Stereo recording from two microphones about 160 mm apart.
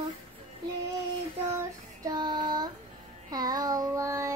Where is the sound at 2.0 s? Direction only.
25° right (ahead or behind).